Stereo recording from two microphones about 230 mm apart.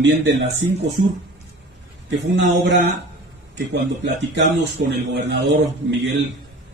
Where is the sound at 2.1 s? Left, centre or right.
Right.